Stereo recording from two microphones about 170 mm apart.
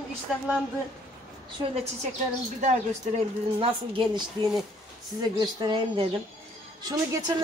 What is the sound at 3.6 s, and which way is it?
Speech, 30° right (ahead or behind).